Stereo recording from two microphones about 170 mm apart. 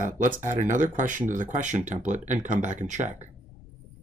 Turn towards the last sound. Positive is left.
turn(degrees=-45)  # may be behind; listen again after turning